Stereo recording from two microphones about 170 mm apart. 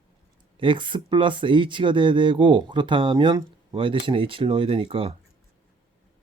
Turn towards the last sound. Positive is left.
turn(degrees=-35)  # may be behind; listen again after turning